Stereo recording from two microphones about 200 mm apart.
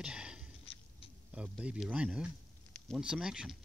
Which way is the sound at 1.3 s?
5° right (ahead or behind).